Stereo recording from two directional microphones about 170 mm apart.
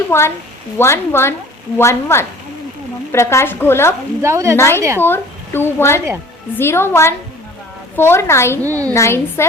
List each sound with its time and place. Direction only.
0.1 s a woman's voice: 15° left (ahead or behind)
4.2 s a woman's voice: 15° right (ahead or behind)
4.5 s a woman's voice: 15° left (ahead or behind)
4.8 s a woman's voice: 15° right (ahead or behind)
5.0 s a woman's voice: 15° left (ahead or behind)
8.6 s a woman's voice: 20° right (ahead or behind)
8.9 s a woman's voice: 15° left (ahead or behind)